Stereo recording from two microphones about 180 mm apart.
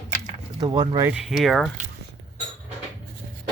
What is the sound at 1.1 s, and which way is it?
Speech, centre (ahead or behind).